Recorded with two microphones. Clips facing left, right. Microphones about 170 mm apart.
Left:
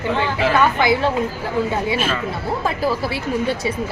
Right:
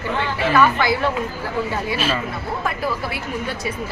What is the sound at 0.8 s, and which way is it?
Speech, 20° left (ahead or behind).